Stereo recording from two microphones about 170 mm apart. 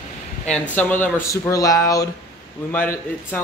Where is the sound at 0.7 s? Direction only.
10° left (ahead or behind).